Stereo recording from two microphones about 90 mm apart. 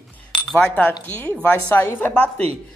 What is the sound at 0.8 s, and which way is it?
Speech, 20° left (ahead or behind).